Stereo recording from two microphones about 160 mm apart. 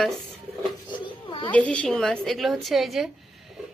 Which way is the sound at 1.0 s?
30° left (ahead or behind).